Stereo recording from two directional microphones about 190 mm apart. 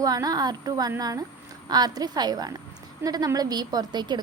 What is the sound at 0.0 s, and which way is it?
A woman's voice, 20° right (ahead or behind).